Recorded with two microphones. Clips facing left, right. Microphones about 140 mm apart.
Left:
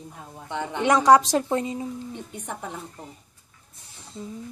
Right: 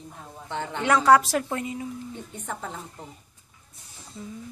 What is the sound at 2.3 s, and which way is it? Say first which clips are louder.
Speech: right 2 dB; 15° left (ahead or behind).